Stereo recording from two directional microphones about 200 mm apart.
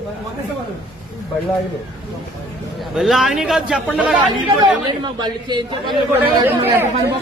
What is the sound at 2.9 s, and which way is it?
A man's voice, centre (ahead or behind).